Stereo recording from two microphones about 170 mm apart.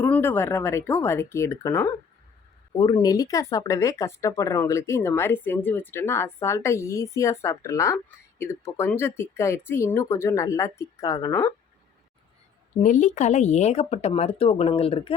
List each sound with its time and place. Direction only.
0.0 s speech: 15° left (ahead or behind)
12.8 s speech: 50° left (ahead or behind)